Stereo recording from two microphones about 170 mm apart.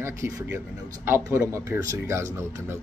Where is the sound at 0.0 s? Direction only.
15° right (ahead or behind).